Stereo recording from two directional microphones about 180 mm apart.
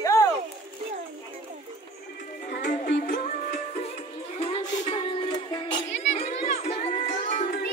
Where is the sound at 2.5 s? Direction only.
75° left (ahead or behind).